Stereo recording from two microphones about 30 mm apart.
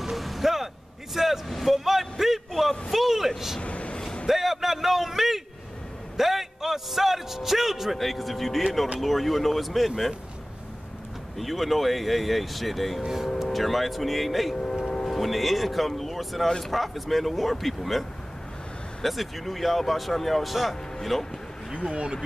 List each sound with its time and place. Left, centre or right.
0.0 s a sound: centre
1.1 s vehicle: centre
1.7 s a sound: centre
2.9 s vehicle: centre
3.6 s vehicle: left
4.3 s a sound: centre
8.0 s speech: centre
11.3 s speech: centre
13.0 s speech: centre
13.5 s speech: centre
19.0 s speech: centre
21.9 s speech: right